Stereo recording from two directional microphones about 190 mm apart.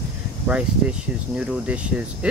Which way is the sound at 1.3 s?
5° right (ahead or behind).